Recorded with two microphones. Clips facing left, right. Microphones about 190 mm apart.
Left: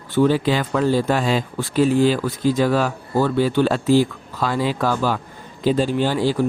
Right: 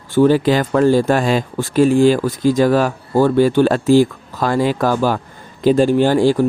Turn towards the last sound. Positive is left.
turn(degrees=-45)  # may be behind; listen again after turning